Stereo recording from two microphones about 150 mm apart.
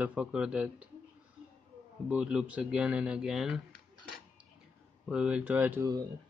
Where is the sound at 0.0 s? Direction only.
10° right (ahead or behind).